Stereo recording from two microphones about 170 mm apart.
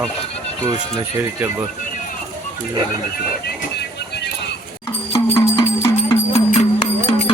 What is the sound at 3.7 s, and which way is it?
Vehicle, 80° left.